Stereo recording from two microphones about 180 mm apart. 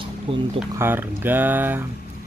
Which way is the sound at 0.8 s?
10° right (ahead or behind).